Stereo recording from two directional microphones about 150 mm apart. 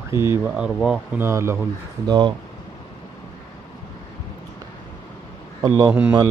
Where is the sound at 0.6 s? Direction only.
Centre (ahead or behind).